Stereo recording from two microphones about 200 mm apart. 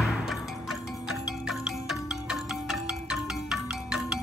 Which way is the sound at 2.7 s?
5° right (ahead or behind).